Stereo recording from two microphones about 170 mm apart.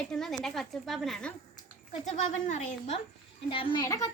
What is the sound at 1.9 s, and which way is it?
Speech, 45° left (ahead or behind).